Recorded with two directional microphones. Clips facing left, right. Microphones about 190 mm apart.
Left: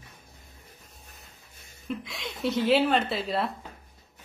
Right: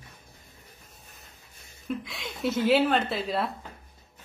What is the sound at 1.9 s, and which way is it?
A woman's voice, centre (ahead or behind).